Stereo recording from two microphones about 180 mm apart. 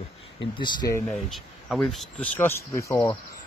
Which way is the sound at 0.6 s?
25° left (ahead or behind).